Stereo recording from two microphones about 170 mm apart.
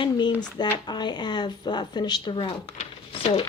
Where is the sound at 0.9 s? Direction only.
25° left (ahead or behind).